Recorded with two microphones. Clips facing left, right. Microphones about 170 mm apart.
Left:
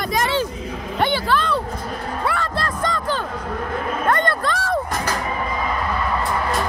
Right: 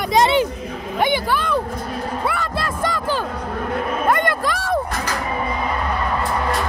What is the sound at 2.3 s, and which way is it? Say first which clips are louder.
Music: even; 5° right (ahead or behind).